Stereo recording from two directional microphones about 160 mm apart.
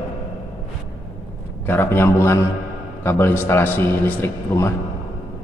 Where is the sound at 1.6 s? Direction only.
15° left (ahead or behind).